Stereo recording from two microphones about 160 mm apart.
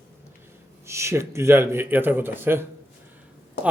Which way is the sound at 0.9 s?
15° right (ahead or behind).